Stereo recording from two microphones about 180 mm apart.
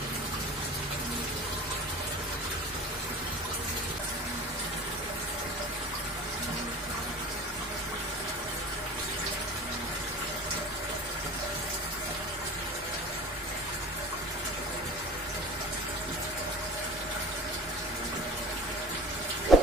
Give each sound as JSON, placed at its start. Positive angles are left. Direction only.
{"t": 19.5, "sound": "heart murmur", "side_deg": 0}